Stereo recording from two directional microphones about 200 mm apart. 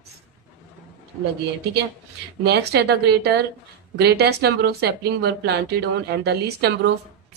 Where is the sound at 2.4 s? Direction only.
55° right (ahead or behind).